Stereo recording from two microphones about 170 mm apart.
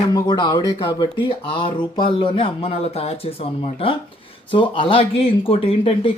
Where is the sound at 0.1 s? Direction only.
25° left (ahead or behind).